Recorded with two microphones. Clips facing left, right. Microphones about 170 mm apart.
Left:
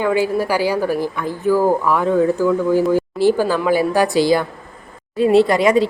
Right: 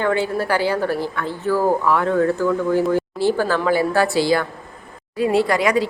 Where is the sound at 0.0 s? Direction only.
10° left (ahead or behind).